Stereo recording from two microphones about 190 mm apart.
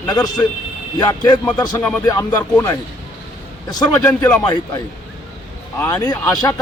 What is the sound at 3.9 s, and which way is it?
Speech, 10° left (ahead or behind).